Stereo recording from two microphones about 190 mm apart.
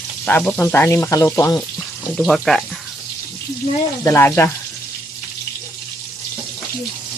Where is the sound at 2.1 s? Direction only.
Centre (ahead or behind).